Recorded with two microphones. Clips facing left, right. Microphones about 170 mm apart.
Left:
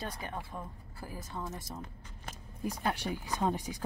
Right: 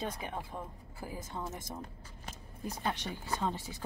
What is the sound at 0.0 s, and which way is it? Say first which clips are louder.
Speech: right 2 dB; 20° right (ahead or behind).